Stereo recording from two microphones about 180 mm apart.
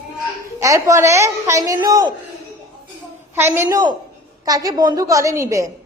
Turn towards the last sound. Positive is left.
turn(degrees=-15)  # may be behind; listen again after turning